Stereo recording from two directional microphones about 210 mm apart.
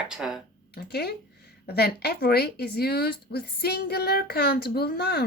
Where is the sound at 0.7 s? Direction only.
50° left (ahead or behind).